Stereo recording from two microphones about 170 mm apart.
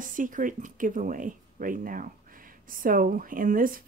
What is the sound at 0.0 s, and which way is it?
Speech, 50° right (ahead or behind).